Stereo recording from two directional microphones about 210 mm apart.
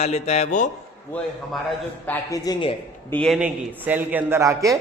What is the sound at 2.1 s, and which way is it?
Speech, 15° left (ahead or behind).